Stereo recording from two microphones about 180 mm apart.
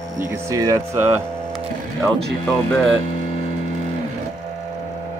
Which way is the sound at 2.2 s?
5° left (ahead or behind).